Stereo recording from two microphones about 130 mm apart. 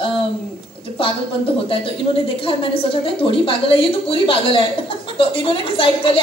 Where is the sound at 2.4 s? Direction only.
45° left (ahead or behind).